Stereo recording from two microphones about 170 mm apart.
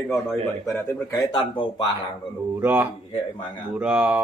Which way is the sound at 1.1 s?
25° left (ahead or behind).